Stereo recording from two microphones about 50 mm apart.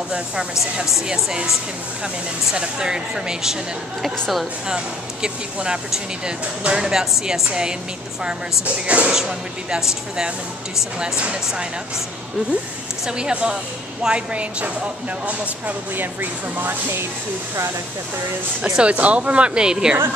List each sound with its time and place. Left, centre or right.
0.9 s speech: centre
2.5 s speech: centre
4.0 s a woman's voice: centre
4.6 s speech: centre
8.8 s speech: right
9.1 s speech: centre
11.0 s speech: right
13.1 s speech: centre; by 17.0 s right
18.6 s speech: right